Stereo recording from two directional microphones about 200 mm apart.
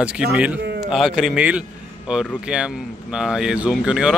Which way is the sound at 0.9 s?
Centre (ahead or behind).